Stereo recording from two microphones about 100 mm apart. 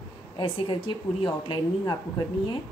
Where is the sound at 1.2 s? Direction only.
45° left (ahead or behind).